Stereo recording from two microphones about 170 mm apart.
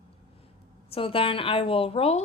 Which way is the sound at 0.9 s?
35° left (ahead or behind).